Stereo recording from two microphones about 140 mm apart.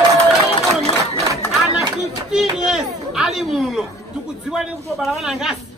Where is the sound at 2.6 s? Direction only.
5° right (ahead or behind).